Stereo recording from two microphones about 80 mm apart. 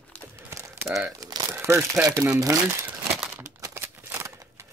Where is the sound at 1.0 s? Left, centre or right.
Right.